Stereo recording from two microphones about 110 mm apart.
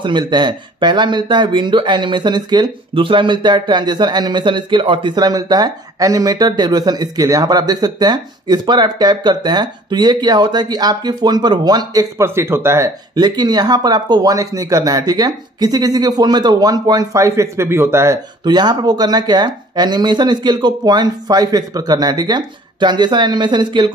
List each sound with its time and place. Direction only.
0.0 s speech: 45° right (ahead or behind); by 18.2 s 25° right (ahead or behind)
18.4 s speech: 40° right (ahead or behind)